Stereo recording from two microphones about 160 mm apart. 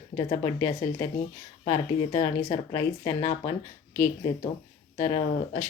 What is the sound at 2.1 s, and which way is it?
Speech, 30° left (ahead or behind).